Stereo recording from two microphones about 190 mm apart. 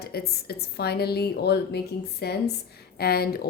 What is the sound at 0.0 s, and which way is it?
A woman's voice, 55° left (ahead or behind).